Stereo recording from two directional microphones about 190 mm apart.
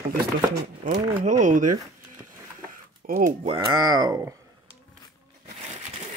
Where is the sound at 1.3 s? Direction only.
40° right (ahead or behind).